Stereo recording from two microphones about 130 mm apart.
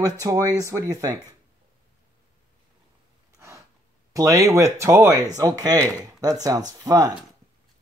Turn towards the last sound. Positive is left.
turn(degrees=-30)  # may be behind; listen again after turning